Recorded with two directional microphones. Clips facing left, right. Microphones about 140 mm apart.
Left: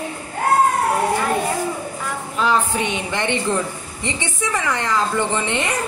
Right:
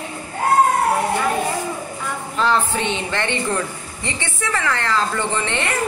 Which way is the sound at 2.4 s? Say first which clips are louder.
Even; 10° left (ahead or behind).